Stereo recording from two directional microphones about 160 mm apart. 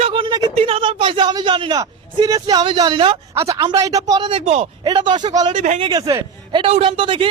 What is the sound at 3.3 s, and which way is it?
A man's voice, 20° right (ahead or behind).